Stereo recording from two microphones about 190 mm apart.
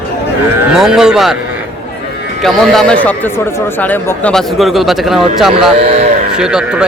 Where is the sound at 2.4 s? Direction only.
Centre (ahead or behind).